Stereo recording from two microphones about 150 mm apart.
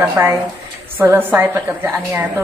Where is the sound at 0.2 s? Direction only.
15° right (ahead or behind).